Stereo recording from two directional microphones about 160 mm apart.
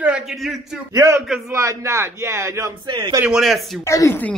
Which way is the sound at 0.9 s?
20° right (ahead or behind).